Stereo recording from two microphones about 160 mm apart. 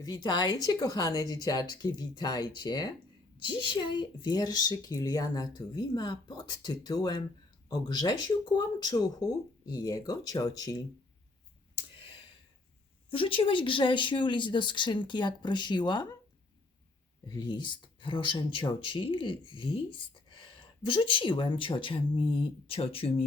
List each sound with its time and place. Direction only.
0.0 s a woman's voice: 25° left (ahead or behind)
13.1 s a woman's voice: 35° left (ahead or behind)
17.2 s speech: 25° left (ahead or behind)